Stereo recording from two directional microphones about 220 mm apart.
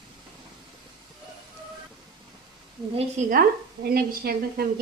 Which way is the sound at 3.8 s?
45° right (ahead or behind).